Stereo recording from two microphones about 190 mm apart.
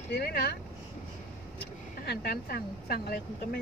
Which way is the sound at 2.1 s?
55° left (ahead or behind).